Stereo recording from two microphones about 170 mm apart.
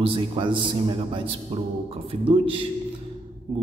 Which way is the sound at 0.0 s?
30° right (ahead or behind).